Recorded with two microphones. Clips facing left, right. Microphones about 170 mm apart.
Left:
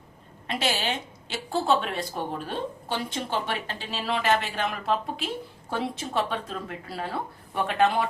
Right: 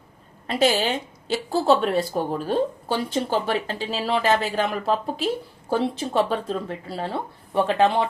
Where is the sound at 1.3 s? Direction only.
35° right (ahead or behind).